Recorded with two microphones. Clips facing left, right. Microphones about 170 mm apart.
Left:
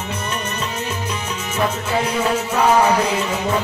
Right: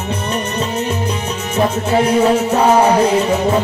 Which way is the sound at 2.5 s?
35° right (ahead or behind).